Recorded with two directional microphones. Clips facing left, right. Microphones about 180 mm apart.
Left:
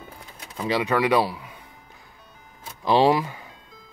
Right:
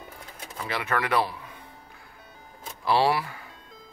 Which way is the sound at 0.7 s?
15° left (ahead or behind).